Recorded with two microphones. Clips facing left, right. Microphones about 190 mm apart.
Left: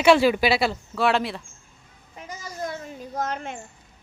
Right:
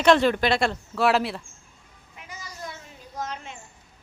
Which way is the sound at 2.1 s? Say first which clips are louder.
Left 6 dB; 45° left (ahead or behind).